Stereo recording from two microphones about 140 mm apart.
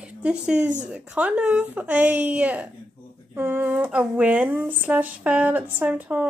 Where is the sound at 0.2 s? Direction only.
5° right (ahead or behind).